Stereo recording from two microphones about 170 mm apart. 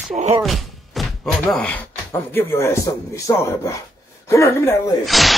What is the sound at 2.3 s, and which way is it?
Speech, 15° left (ahead or behind).